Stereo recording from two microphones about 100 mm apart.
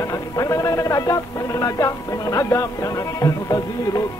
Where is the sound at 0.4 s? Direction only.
35° left (ahead or behind).